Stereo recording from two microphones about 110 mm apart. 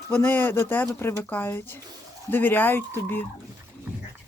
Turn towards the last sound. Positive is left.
turn(degrees=20)  # may be behind; listen again after turning